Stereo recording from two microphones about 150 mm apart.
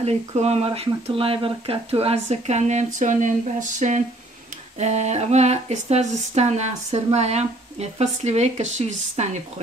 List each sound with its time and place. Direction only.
0.0 s speech: 45° right (ahead or behind)